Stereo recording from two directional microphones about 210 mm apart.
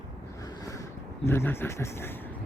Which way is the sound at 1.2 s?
10° left (ahead or behind).